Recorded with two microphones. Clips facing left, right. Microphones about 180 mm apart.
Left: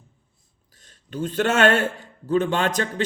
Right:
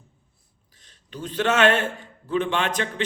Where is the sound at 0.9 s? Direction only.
50° left (ahead or behind).